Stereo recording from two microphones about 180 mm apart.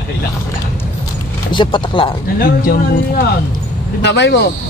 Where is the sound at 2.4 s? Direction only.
55° left (ahead or behind).